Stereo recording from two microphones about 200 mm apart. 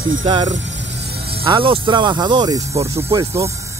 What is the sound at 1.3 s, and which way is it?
Speech, 25° right (ahead or behind).